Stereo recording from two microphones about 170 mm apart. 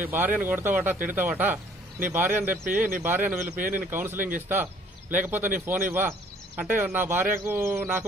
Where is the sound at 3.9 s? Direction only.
10° right (ahead or behind).